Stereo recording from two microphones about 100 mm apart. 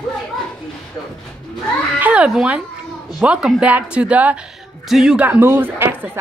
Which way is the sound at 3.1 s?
10° right (ahead or behind).